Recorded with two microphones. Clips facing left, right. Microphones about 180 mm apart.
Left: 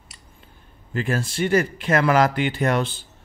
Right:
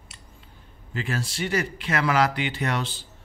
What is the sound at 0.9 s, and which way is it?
Speech, 50° left (ahead or behind).